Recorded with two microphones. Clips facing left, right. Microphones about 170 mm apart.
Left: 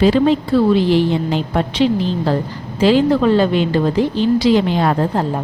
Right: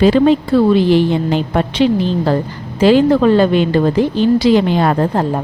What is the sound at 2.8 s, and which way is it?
A woman's voice, 55° right (ahead or behind).